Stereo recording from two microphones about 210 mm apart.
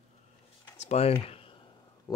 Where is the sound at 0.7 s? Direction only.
30° left (ahead or behind).